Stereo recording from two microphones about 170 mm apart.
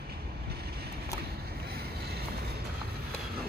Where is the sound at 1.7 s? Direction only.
70° right (ahead or behind).